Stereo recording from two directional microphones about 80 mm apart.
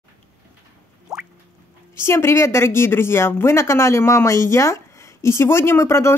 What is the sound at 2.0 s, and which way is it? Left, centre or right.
A woman's voice, left.